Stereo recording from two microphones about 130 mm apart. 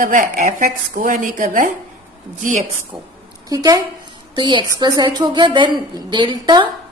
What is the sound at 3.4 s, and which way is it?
A woman's voice, 30° right (ahead or behind).